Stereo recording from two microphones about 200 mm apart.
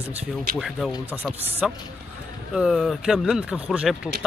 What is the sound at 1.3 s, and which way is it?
Speech, 5° right (ahead or behind).